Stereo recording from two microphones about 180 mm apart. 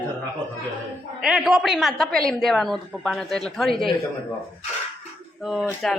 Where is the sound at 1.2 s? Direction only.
Centre (ahead or behind).